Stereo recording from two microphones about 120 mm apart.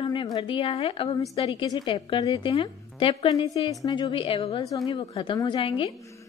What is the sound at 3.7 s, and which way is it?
A woman's voice, 30° left (ahead or behind).